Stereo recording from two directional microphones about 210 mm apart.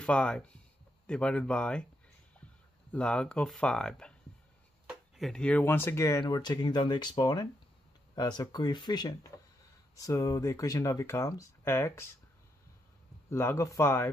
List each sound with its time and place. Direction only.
0.0 s speech: 5° left (ahead or behind)
2.9 s speech: 5° left (ahead or behind)
13.3 s speech: 15° left (ahead or behind)